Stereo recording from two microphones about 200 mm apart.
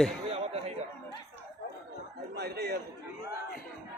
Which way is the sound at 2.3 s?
55° right (ahead or behind).